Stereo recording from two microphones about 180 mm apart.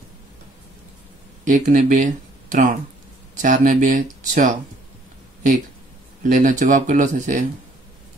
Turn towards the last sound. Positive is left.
turn(degrees=-45)  # may be behind; listen again after turning